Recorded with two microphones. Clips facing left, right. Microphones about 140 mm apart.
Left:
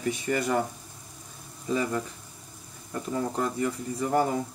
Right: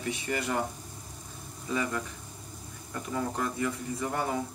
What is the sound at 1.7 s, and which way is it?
Speech, 30° left (ahead or behind).